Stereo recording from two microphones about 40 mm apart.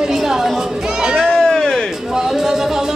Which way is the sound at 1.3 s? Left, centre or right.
Centre.